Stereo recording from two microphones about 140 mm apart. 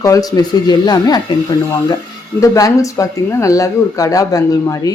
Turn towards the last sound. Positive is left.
turn(degrees=25)  # may be behind; listen again after turning